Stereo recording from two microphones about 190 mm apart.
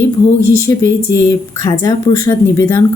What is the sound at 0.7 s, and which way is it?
Speech, 15° left (ahead or behind).